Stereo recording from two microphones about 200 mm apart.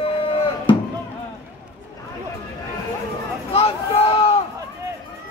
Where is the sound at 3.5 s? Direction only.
30° left (ahead or behind).